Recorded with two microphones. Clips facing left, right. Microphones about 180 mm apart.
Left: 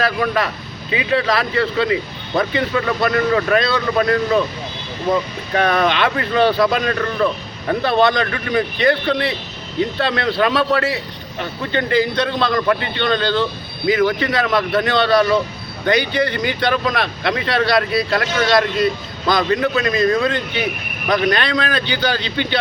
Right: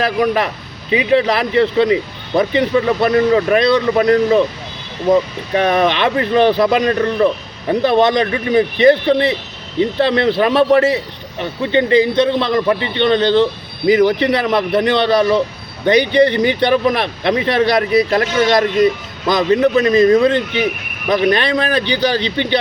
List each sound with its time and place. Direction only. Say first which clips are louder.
0.0 s a man's voice: right 3 dB; 20° right (ahead or behind)
5.5 s a man's voice: right 2 dB; 20° right (ahead or behind)